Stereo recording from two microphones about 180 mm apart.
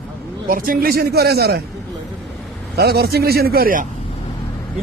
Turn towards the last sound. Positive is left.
turn(degrees=-55)  # may be behind; listen again after turning